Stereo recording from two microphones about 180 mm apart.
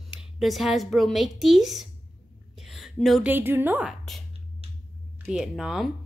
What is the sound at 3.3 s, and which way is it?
Speech, 10° right (ahead or behind).